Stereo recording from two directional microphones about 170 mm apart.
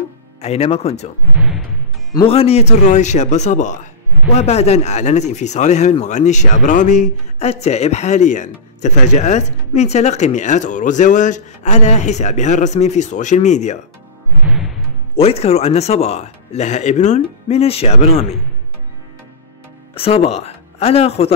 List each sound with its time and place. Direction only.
0.4 s speech: 40° left (ahead or behind)
1.3 s music: 5° right (ahead or behind)
2.2 s speech: 35° left (ahead or behind)
14.4 s music: 5° right (ahead or behind)
15.1 s speech: 35° left (ahead or behind)
19.9 s speech: 35° left (ahead or behind)